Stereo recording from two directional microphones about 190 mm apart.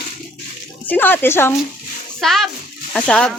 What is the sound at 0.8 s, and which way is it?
Speech, 10° left (ahead or behind).